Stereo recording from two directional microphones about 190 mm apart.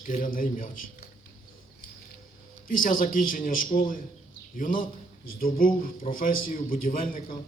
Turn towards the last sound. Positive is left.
turn(degrees=45)  # may be behind; listen again after turning